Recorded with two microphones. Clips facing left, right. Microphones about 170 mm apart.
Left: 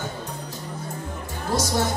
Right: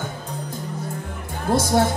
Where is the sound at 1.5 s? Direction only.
55° right (ahead or behind).